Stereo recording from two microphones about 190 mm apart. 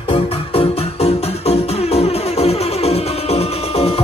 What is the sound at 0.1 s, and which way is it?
Music, 30° left (ahead or behind).